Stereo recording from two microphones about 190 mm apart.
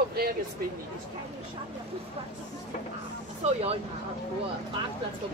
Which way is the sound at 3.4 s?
35° right (ahead or behind).